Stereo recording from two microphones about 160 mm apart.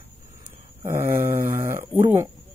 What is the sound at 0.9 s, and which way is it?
Speech, 15° right (ahead or behind).